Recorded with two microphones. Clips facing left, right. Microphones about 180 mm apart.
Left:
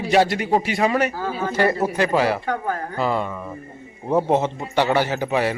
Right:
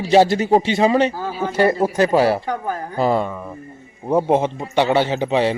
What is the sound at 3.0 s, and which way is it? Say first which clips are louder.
Speech: right 5 dB; 35° right (ahead or behind).